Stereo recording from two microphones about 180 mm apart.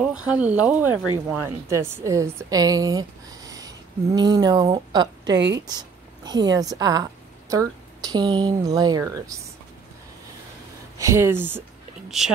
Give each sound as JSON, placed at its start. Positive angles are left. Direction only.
{"t": 0.1, "sound": "a woman's voice", "side_deg": -5}
{"t": 11.0, "sound": "speech", "side_deg": -15}